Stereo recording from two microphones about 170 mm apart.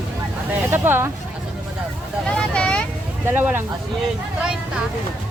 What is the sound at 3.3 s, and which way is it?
Speech, 10° right (ahead or behind).